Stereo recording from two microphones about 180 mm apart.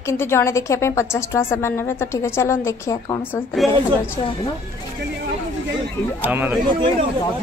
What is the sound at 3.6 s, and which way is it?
Speech, centre (ahead or behind).